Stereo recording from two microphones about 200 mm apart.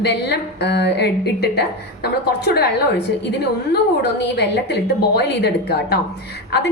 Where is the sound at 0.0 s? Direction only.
55° left (ahead or behind).